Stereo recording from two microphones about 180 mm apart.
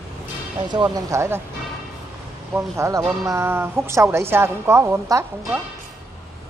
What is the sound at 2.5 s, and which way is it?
A woman's voice, 15° right (ahead or behind).